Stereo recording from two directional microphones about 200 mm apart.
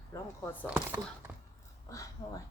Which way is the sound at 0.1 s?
10° left (ahead or behind).